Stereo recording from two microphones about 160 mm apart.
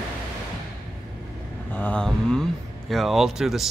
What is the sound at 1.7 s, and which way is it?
Speech, 10° left (ahead or behind).